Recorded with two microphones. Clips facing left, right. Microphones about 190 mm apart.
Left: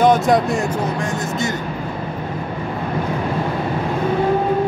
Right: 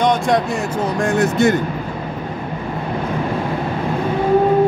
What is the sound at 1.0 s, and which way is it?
Speech, 60° right (ahead or behind).